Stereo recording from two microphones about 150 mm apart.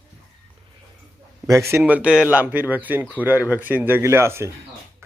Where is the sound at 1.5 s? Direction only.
20° right (ahead or behind).